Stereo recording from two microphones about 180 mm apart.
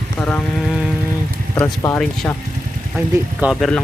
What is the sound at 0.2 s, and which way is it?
Speech, 10° left (ahead or behind).